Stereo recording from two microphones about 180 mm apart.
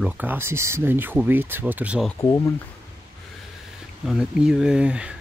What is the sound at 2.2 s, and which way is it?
Speech, 20° left (ahead or behind).